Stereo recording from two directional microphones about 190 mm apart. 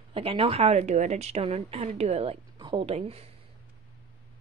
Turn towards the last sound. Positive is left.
turn(degrees=-30)  # may be behind; listen again after turning